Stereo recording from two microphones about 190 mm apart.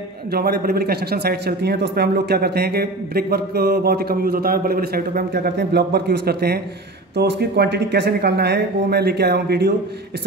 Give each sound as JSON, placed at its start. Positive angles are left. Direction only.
{"t": 0.3, "sound": "a man's voice", "side_deg": -55}